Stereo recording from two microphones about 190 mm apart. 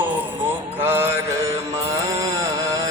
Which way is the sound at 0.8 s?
10° right (ahead or behind).